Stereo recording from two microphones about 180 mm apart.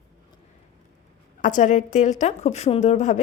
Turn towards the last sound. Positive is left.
turn(degrees=40)  # may be behind; listen again after turning